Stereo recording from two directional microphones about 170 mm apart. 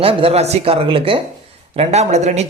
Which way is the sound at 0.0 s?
35° right (ahead or behind).